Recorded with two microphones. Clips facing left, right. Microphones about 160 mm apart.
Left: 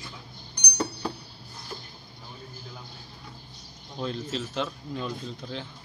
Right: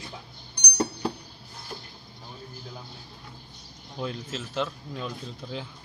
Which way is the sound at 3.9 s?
5° right (ahead or behind).